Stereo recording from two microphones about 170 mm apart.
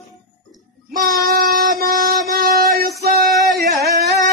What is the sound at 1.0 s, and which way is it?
Child singing, 60° right (ahead or behind).